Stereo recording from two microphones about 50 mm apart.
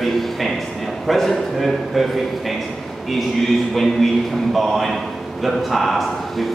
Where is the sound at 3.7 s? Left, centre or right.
Centre.